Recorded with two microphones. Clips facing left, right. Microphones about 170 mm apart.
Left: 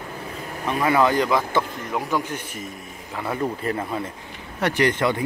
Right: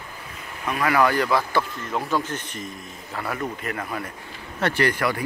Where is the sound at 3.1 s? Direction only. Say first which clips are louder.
Left 3 dB; 25° left (ahead or behind).